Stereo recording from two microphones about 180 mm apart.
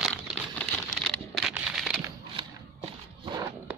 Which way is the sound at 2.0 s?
15° right (ahead or behind).